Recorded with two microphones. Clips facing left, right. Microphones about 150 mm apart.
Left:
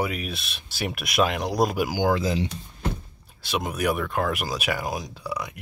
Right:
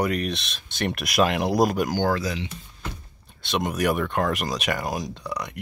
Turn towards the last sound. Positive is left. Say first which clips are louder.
# right 1 dB
turn(degrees=5)  # may be behind; listen again after turning